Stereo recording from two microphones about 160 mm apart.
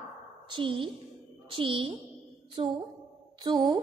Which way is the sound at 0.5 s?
30° right (ahead or behind).